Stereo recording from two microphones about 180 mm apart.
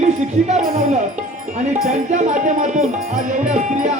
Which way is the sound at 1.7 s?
40° right (ahead or behind).